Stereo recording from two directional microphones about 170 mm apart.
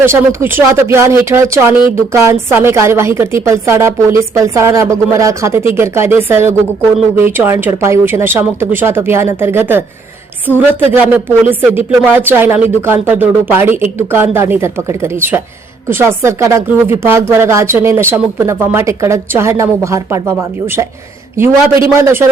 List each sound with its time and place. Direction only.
0.0 s a woman's voice: 15° right (ahead or behind)
21.9 s a woman's voice: 15° right (ahead or behind)